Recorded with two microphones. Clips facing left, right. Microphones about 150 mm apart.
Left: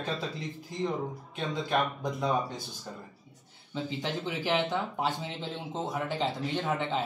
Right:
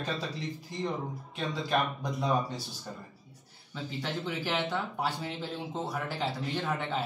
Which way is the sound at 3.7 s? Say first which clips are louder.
Left 3 dB; 20° left (ahead or behind).